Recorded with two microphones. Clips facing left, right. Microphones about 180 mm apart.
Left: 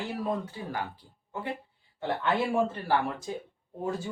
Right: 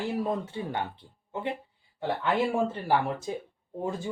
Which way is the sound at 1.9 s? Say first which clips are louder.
Right 1 dB; 15° right (ahead or behind).